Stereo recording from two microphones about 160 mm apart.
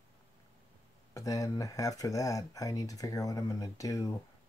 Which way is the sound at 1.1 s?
20° left (ahead or behind).